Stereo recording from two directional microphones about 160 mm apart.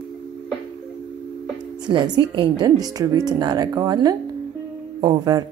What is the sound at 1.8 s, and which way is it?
A woman's voice, 25° right (ahead or behind).